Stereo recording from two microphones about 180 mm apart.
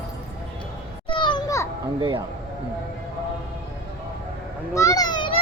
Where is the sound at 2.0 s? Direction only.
25° right (ahead or behind).